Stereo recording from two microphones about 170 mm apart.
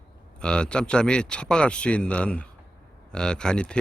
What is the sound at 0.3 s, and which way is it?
Speech, 5° left (ahead or behind).